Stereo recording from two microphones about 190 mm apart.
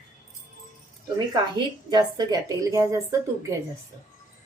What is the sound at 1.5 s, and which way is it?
A woman's voice, 20° right (ahead or behind).